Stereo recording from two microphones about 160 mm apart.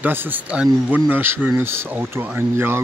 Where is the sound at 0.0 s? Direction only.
10° right (ahead or behind).